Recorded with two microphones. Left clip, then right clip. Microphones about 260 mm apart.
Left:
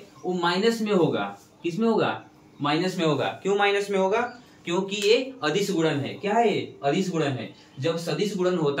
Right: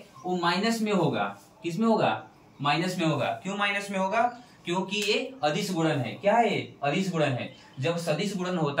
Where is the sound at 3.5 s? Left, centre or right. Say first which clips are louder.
Left 9 dB; centre.